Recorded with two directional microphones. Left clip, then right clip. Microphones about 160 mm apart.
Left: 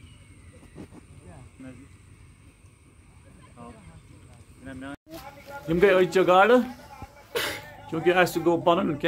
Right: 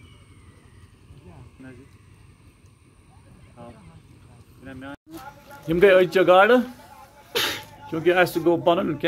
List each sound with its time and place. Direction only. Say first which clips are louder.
4.6 s speech: right 1 dB; 20° left (ahead or behind)
5.7 s a man's voice: right 4 dB; 15° right (ahead or behind)
7.3 s sneeze: right 4 dB; 80° right
7.9 s a man's voice: right 2 dB; 5° right (ahead or behind)